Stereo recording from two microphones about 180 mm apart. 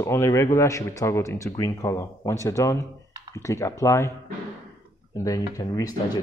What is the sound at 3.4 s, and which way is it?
Speech, 15° left (ahead or behind).